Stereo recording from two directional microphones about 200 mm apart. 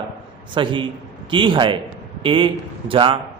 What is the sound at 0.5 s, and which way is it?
Speech, 25° right (ahead or behind).